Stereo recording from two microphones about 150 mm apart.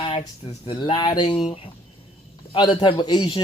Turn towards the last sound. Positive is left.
turn(degrees=25)  # may be behind; listen again after turning